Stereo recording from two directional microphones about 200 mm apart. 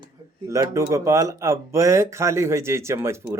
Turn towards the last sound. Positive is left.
turn(degrees=-15)  # may be behind; listen again after turning